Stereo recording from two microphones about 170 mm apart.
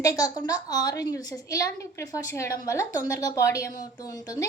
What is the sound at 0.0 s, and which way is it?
A woman's voice, 20° left (ahead or behind).